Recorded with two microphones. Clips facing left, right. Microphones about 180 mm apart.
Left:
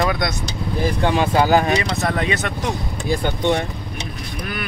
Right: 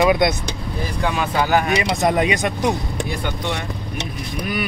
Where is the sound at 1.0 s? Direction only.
30° left (ahead or behind).